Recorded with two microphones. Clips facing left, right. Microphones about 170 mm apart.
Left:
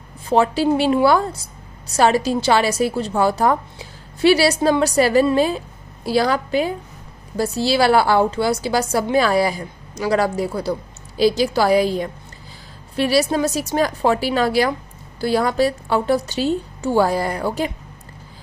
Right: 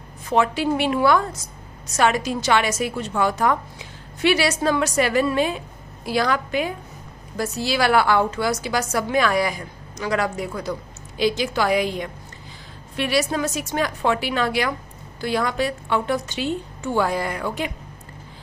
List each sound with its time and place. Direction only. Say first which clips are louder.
0.3 s a woman's voice: left 4 dB; 35° left (ahead or behind)